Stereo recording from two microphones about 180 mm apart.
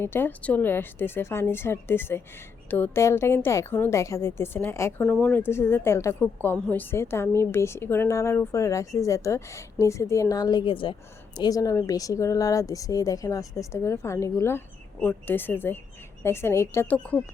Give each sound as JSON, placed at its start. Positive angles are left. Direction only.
{"t": 0.0, "sound": "speech", "side_deg": 10}